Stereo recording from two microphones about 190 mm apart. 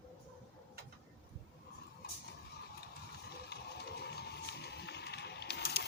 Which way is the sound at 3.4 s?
60° left (ahead or behind).